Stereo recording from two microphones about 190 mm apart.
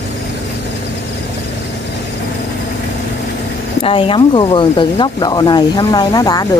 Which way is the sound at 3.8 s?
30° left (ahead or behind).